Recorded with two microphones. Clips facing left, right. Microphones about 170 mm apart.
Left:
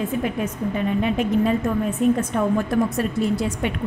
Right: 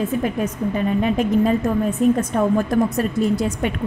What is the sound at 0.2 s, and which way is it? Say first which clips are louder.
A woman's voice: right 2 dB; 40° right (ahead or behind).